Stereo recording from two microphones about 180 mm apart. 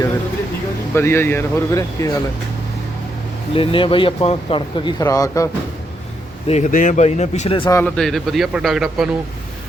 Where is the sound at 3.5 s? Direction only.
30° left (ahead or behind).